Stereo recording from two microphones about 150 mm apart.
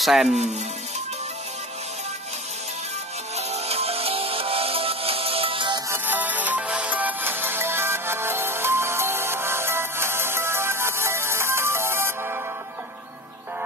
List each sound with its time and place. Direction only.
0.0 s speech: centre (ahead or behind)
3.3 s music: 45° right (ahead or behind)
5.9 s music: 10° right (ahead or behind)